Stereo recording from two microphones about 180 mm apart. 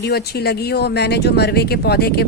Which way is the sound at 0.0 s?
65° left (ahead or behind).